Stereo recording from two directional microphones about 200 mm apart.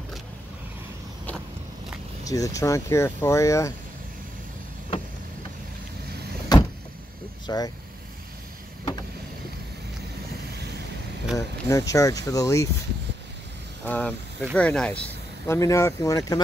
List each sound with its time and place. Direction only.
2.2 s speech: 15° left (ahead or behind)
6.5 s vehicle: 20° left (ahead or behind)
7.4 s speech: 20° left (ahead or behind)
11.3 s speech: 15° left (ahead or behind)
13.8 s speech: 5° left (ahead or behind)